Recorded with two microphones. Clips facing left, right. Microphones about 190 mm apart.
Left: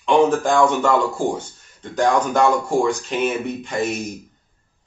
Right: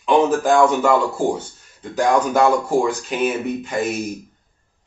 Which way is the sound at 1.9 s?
5° right (ahead or behind).